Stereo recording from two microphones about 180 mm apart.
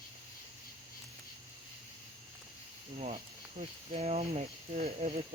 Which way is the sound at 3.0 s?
35° right (ahead or behind).